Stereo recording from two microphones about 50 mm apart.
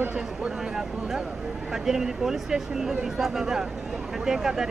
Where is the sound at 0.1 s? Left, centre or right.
Centre.